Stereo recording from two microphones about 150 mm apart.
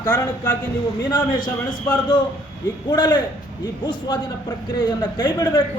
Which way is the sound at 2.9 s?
30° left (ahead or behind).